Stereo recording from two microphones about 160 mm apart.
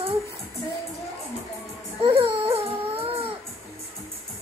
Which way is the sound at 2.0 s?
35° right (ahead or behind).